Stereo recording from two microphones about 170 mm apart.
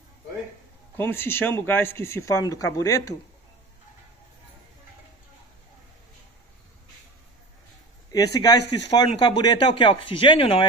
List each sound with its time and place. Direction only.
0.9 s speech: 15° left (ahead or behind)
8.1 s speech: 20° left (ahead or behind)